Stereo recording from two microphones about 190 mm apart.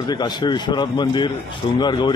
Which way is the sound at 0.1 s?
20° left (ahead or behind).